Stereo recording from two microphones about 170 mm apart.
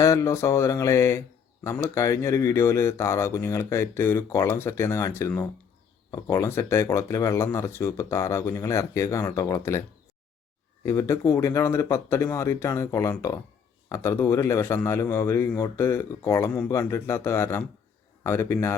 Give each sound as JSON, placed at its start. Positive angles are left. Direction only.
{"t": 0.0, "sound": "speech", "side_deg": 15}
{"t": 10.8, "sound": "a man's voice", "side_deg": 15}